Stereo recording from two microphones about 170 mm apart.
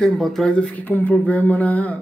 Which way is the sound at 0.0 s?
Centre (ahead or behind).